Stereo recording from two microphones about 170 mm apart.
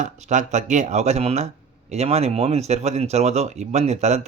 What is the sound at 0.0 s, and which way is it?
Speech, 45° right (ahead or behind).